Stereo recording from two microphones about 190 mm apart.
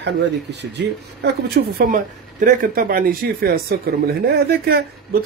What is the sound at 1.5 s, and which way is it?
Speech, 45° right (ahead or behind).